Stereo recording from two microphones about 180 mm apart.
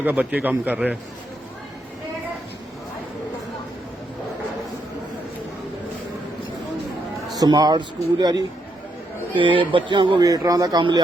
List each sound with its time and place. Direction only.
0.0 s a man's voice: 10° right (ahead or behind)
7.3 s speech: 20° right (ahead or behind)